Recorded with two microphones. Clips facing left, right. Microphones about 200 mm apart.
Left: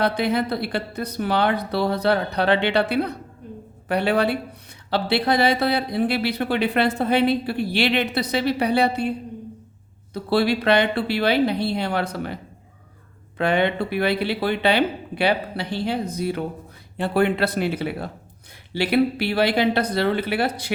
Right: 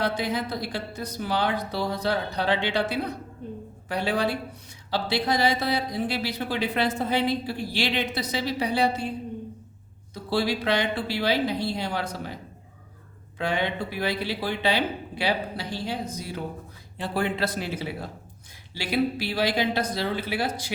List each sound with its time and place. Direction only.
0.0 s speech: 60° left (ahead or behind)
3.4 s a sound: 30° right (ahead or behind)
3.8 s speech: 65° left (ahead or behind)
10.2 s speech: 65° left (ahead or behind)
13.4 s speech: 60° left (ahead or behind)